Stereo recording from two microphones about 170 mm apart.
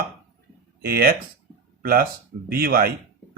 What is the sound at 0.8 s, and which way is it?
Speech, 60° right (ahead or behind).